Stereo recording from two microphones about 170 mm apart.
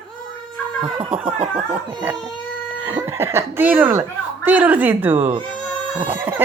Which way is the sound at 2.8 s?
10° right (ahead or behind).